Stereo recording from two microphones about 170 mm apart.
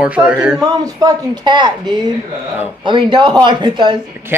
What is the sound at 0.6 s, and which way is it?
A woman's voice, 20° right (ahead or behind).